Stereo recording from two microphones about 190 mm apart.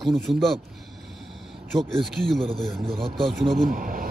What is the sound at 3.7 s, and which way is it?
Speech, 50° right (ahead or behind).